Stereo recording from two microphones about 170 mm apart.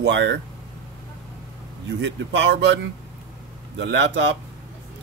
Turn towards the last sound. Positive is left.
turn(degrees=-90)